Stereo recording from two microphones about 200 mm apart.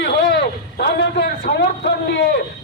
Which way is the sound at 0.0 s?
55° left (ahead or behind).